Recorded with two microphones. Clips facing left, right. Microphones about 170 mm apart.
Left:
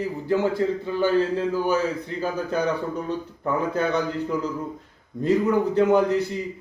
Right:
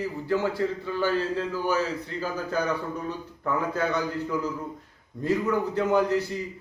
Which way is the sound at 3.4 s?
20° left (ahead or behind).